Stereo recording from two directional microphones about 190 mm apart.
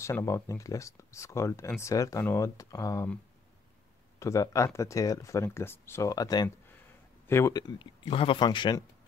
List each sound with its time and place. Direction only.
0.0 s speech: 15° left (ahead or behind)
4.2 s speech: 15° left (ahead or behind)